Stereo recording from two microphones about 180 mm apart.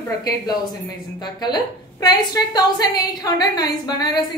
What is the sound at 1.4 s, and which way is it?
A woman's voice, 25° left (ahead or behind).